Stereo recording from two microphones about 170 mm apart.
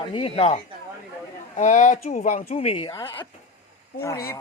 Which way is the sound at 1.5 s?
45° left (ahead or behind).